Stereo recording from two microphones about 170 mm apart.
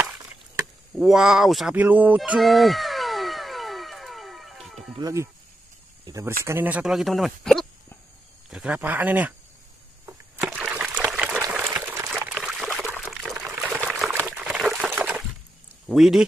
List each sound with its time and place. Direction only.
0.9 s a sound: centre (ahead or behind)
4.9 s speech: 20° right (ahead or behind)
10.3 s trickle: 5° right (ahead or behind)
11.8 s pour: 15° right (ahead or behind)
12.4 s pour: centre (ahead or behind)
14.9 s a sound: 10° right (ahead or behind)
15.9 s speech: centre (ahead or behind)